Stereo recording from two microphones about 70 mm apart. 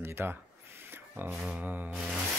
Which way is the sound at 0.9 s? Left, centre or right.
Right.